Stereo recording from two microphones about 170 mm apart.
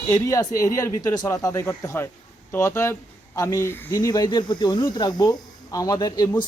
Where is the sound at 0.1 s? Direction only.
20° left (ahead or behind).